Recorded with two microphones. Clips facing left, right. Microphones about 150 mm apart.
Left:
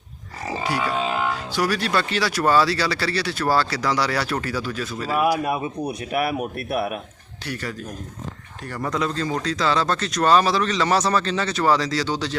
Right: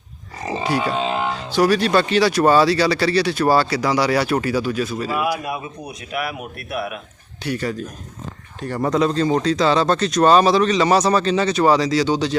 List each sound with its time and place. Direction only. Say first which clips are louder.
0.4 s speech: right 3 dB; 20° right (ahead or behind)
5.1 s speech: left 5 dB; 40° left (ahead or behind)
7.4 s speech: right 6 dB; 20° right (ahead or behind)